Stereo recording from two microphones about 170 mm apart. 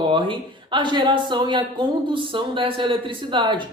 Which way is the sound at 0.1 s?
30° right (ahead or behind).